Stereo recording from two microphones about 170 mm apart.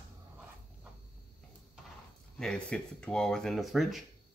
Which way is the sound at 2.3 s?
5° left (ahead or behind).